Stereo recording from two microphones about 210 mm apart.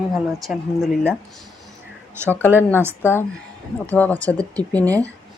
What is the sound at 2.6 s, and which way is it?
Speech, 10° left (ahead or behind).